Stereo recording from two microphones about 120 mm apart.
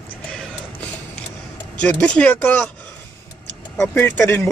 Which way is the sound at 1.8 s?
10° left (ahead or behind).